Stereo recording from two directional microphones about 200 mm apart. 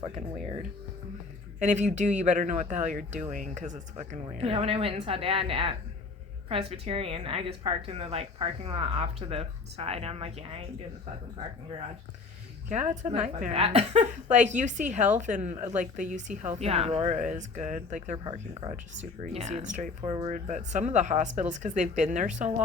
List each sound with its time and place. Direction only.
1.5 s a woman's voice: 35° right (ahead or behind)
12.6 s speech: 35° right (ahead or behind)
19.3 s speech: 35° right (ahead or behind)